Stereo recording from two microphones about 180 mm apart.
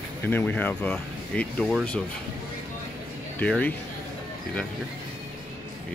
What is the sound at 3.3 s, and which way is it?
Speech, 10° left (ahead or behind).